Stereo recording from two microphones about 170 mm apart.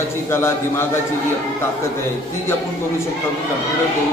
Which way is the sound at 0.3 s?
15° left (ahead or behind).